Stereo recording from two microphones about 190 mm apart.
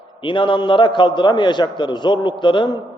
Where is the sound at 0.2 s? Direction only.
25° left (ahead or behind).